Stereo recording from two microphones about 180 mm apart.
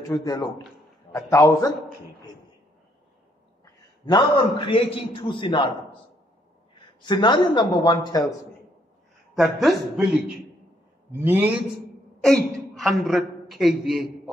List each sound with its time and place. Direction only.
0.1 s speech: 20° left (ahead or behind)
3.6 s a sound: 25° left (ahead or behind)
4.6 s speech: 30° left (ahead or behind)
7.0 s speech: 25° left (ahead or behind)
9.3 s a man's voice: centre (ahead or behind)
12.2 s a man's voice: centre (ahead or behind)